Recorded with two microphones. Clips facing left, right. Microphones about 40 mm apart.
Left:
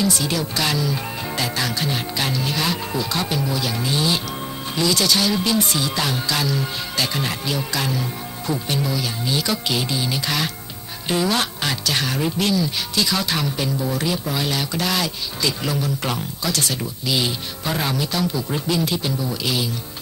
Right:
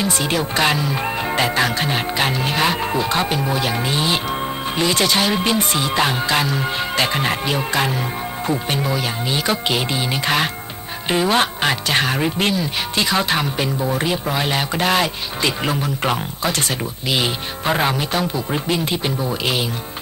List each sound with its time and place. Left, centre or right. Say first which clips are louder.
0.0 s speech: right 2 dB; right